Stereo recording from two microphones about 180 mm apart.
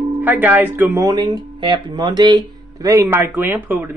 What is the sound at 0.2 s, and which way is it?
Speech, 10° right (ahead or behind).